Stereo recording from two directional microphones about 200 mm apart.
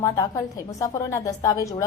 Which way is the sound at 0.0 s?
15° left (ahead or behind).